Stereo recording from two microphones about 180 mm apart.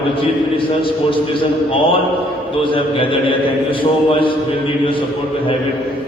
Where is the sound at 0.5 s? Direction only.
30° left (ahead or behind).